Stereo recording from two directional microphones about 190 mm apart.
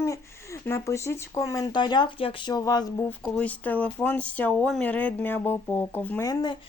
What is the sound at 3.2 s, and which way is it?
Speech, 5° left (ahead or behind).